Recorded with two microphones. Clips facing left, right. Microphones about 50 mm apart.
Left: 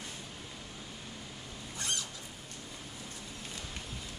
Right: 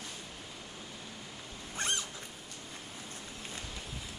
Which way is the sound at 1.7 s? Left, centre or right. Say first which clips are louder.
Right 3 dB; right.